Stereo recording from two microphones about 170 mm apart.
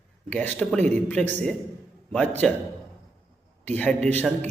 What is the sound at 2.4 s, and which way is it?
Speech, centre (ahead or behind).